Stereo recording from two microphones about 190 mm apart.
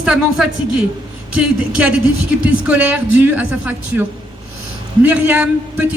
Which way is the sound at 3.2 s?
10° right (ahead or behind).